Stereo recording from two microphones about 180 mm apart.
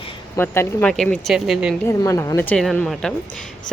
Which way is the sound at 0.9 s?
Centre (ahead or behind).